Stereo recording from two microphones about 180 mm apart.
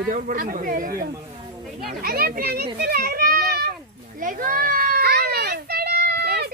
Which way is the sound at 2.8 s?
55° right (ahead or behind).